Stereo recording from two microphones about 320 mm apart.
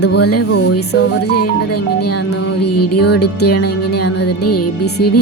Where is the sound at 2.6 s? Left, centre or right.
Left.